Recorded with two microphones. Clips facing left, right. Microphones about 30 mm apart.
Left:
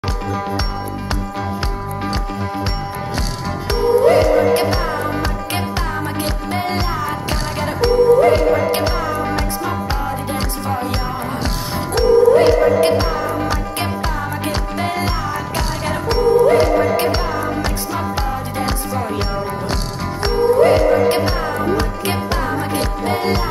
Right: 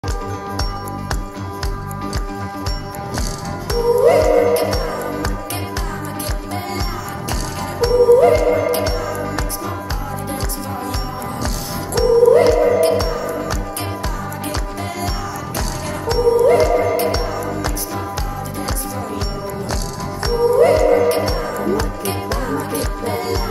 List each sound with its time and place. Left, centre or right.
3.6 s music: left
10.3 s music: left
11.9 s music: left
20.2 s music: left